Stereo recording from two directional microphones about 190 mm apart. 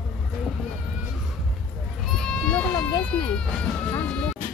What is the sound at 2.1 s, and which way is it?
Goat, 5° left (ahead or behind).